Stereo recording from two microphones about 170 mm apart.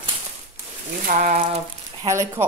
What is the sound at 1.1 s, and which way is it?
Speech, 50° right (ahead or behind).